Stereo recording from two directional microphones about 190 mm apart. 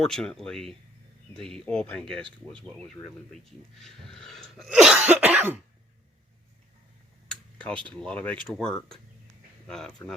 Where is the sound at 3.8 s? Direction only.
5° left (ahead or behind).